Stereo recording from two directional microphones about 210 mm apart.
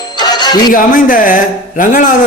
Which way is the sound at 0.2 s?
20° left (ahead or behind).